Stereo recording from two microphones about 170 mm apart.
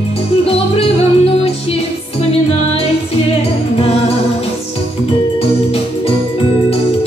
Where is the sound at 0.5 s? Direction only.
35° left (ahead or behind).